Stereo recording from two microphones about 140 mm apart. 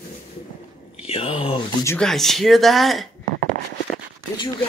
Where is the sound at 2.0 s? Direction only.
5° left (ahead or behind).